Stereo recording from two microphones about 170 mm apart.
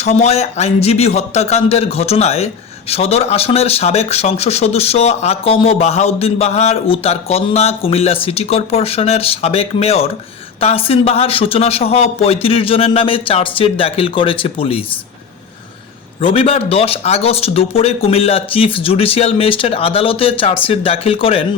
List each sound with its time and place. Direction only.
0.0 s speech: 40° left (ahead or behind)
16.2 s speech: 35° left (ahead or behind)